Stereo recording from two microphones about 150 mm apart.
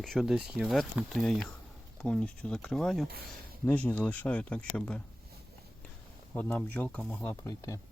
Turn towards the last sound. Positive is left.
turn(degrees=20)  # may be behind; listen again after turning